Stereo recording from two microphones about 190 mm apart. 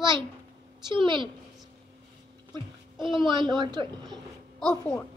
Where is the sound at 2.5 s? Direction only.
25° right (ahead or behind).